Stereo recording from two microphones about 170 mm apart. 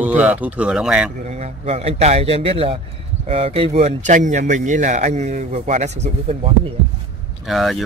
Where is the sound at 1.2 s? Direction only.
40° right (ahead or behind).